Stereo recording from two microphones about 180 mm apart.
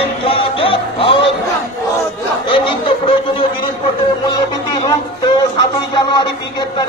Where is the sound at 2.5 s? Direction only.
30° left (ahead or behind).